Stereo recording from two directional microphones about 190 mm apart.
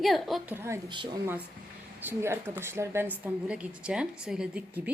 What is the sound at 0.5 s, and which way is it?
Speech, 15° right (ahead or behind).